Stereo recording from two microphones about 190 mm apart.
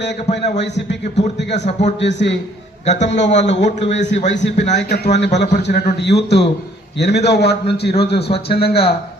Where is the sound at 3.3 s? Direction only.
70° left (ahead or behind).